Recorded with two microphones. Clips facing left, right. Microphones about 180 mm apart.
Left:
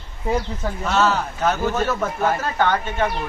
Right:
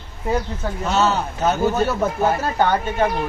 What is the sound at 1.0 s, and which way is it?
Speech, 25° right (ahead or behind).